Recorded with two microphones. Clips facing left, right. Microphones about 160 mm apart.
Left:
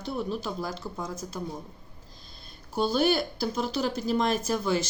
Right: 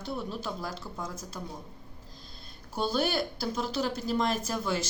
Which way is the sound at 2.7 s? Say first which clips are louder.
Left 4 dB; 5° left (ahead or behind).